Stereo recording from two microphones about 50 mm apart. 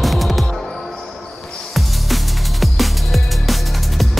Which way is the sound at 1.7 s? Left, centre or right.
Centre.